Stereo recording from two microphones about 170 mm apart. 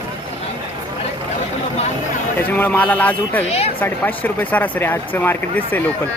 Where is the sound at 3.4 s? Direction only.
35° left (ahead or behind).